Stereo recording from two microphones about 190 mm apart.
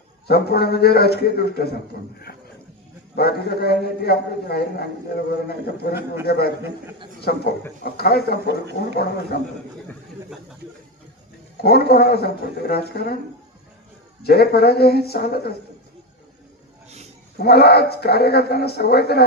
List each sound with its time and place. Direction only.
0.3 s a man's voice: 55° left (ahead or behind)
3.2 s a man's voice: 55° left (ahead or behind)
11.6 s a man's voice: 55° left (ahead or behind)
14.3 s a man's voice: 55° left (ahead or behind)
17.3 s a man's voice: 55° left (ahead or behind)